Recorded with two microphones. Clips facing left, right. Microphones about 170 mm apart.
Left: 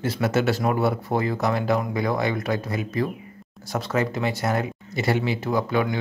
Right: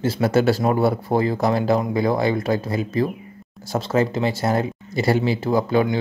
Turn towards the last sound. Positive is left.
turn(degrees=-30)  # may be behind; listen again after turning